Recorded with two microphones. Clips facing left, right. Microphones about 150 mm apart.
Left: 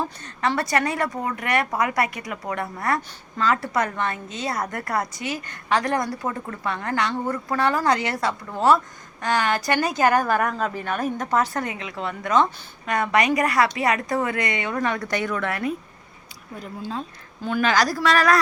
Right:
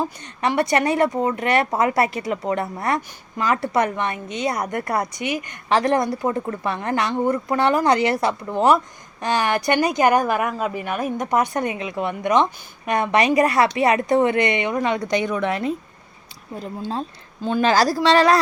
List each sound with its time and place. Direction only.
0.2 s speech: 20° right (ahead or behind)
16.6 s speech: 30° right (ahead or behind)